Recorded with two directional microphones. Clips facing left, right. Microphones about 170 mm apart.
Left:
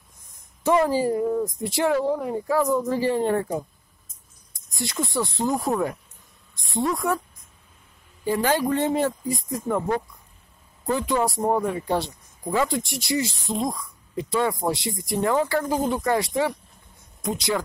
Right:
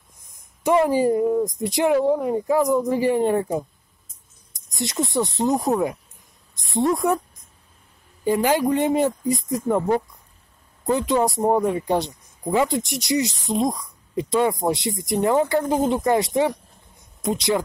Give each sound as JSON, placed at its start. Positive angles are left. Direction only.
{"t": 0.7, "sound": "speech", "side_deg": -15}
{"t": 4.7, "sound": "a woman's voice", "side_deg": -20}
{"t": 8.2, "sound": "speech", "side_deg": -15}